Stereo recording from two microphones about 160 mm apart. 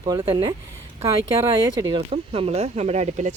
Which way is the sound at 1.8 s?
25° right (ahead or behind).